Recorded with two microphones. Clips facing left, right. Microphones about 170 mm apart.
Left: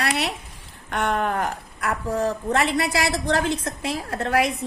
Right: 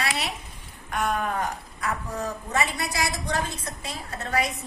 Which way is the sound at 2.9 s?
65° left (ahead or behind).